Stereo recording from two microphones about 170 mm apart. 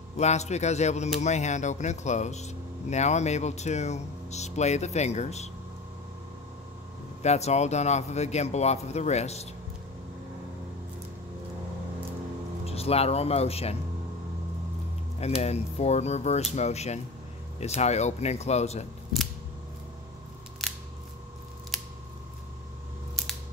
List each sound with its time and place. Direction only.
0.2 s speech: 40° left (ahead or behind)
7.2 s speech: 40° left (ahead or behind)
12.6 s speech: 35° left (ahead or behind)
15.1 s speech: 40° left (ahead or behind)
20.6 s scissors: centre (ahead or behind)